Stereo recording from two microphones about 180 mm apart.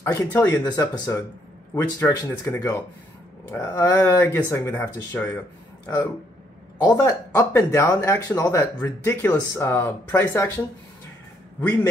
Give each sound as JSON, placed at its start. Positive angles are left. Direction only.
{"t": 0.0, "sound": "speech", "side_deg": 10}